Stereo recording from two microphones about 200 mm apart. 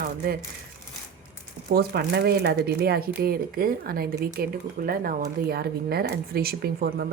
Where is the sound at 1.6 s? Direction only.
50° right (ahead or behind).